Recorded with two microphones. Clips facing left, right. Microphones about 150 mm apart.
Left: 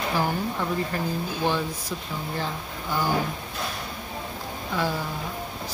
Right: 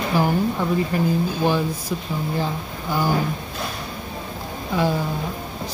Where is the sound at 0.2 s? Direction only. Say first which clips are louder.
Right 6 dB; 15° right (ahead or behind).